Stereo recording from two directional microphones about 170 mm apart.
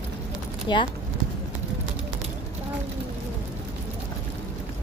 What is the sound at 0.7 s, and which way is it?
Speech, 25° left (ahead or behind).